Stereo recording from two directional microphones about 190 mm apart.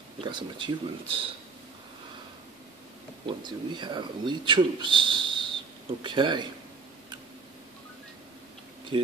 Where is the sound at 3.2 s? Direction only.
25° right (ahead or behind).